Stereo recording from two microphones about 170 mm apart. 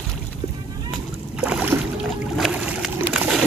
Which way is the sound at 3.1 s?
5° right (ahead or behind).